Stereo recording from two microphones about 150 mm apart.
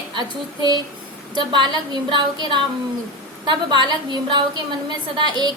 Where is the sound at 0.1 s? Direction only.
30° right (ahead or behind).